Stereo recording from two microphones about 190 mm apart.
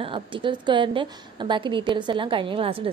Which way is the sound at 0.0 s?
25° right (ahead or behind).